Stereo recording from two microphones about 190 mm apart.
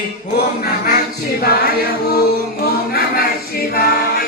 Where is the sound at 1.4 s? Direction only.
55° left (ahead or behind).